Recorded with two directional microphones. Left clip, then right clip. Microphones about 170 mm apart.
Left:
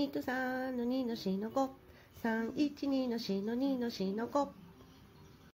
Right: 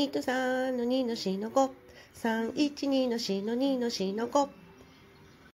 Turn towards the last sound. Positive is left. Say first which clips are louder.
# right 6 dB
turn(degrees=-15)  # may be behind; listen again after turning